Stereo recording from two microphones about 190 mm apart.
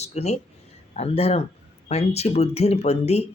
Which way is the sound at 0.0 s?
35° left (ahead or behind).